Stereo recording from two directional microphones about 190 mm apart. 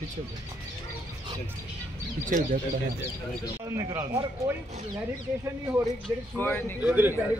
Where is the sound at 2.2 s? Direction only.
45° right (ahead or behind).